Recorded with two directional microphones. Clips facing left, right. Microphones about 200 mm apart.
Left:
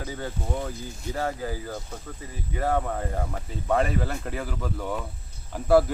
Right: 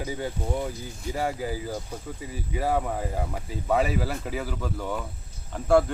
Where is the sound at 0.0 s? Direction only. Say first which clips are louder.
Right 2 dB; 15° right (ahead or behind).